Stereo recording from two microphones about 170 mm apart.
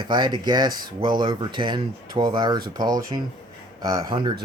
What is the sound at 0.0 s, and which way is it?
Speech, 25° right (ahead or behind).